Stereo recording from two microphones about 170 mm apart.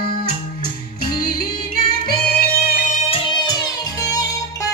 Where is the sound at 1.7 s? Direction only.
65° left (ahead or behind).